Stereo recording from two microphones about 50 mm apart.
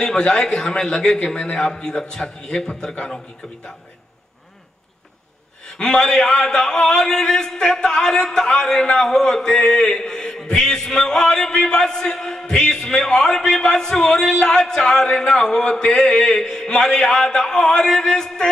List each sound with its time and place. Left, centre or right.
0.0 s a man's voice: centre
5.8 s a man's voice: centre